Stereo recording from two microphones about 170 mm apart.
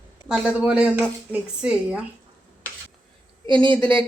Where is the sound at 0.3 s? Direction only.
5° right (ahead or behind).